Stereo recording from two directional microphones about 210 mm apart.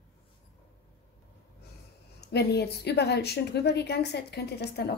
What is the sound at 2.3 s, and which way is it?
Speech, 50° left (ahead or behind).